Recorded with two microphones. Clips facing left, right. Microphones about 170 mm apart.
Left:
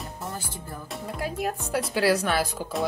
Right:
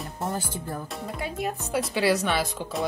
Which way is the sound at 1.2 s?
Centre (ahead or behind).